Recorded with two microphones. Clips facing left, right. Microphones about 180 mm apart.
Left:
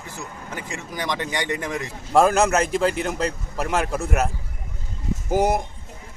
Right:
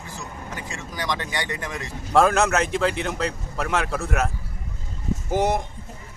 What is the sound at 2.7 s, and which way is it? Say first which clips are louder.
Speech: left 2 dB; 40° left (ahead or behind).